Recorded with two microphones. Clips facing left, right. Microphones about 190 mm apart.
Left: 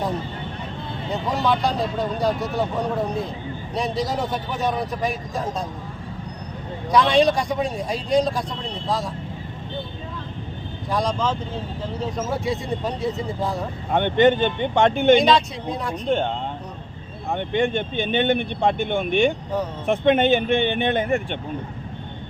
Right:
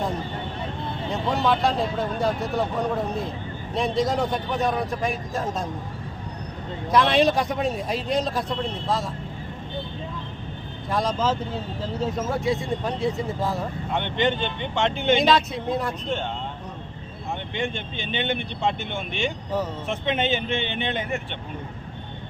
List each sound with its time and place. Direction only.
1.1 s speech: centre (ahead or behind)
6.9 s speech: centre (ahead or behind)
10.9 s speech: 5° right (ahead or behind)
13.9 s speech: 50° left (ahead or behind)
15.2 s speech: centre (ahead or behind)
16.0 s speech: 55° left (ahead or behind)